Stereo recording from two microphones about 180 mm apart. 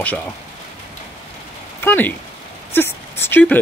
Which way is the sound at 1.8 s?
10° left (ahead or behind).